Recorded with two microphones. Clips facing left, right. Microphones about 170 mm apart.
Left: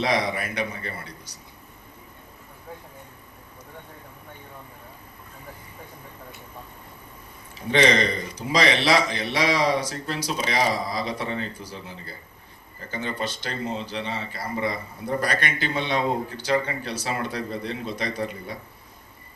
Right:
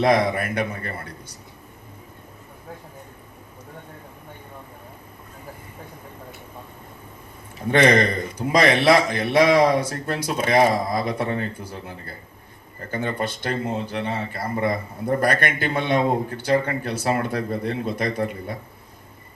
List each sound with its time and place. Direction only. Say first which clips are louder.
0.0 s speech: right 6 dB; 55° right (ahead or behind)
7.7 s speech: right 3 dB; 55° right (ahead or behind)